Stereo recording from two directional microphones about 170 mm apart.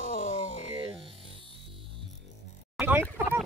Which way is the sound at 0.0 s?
50° left (ahead or behind).